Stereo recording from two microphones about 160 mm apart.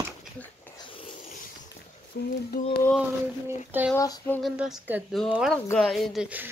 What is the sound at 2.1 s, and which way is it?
Speech, 90° left.